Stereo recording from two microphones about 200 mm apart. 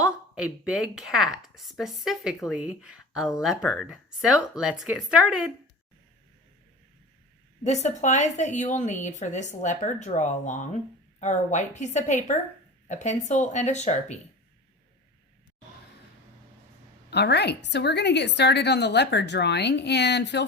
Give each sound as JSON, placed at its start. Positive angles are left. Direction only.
{"t": 0.0, "sound": "speech", "side_deg": -5}
{"t": 7.6, "sound": "a woman's voice", "side_deg": 35}
{"t": 17.1, "sound": "a woman's voice", "side_deg": 55}